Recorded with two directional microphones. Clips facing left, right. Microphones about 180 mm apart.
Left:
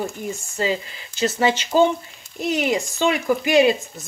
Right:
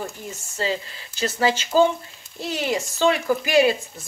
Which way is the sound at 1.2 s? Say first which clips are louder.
Left 2 dB; 20° left (ahead or behind).